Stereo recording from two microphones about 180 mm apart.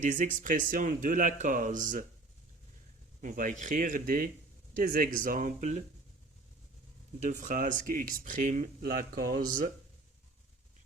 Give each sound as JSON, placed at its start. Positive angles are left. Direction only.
{"t": 0.0, "sound": "speech", "side_deg": -45}
{"t": 3.2, "sound": "speech", "side_deg": -45}
{"t": 7.2, "sound": "speech", "side_deg": -45}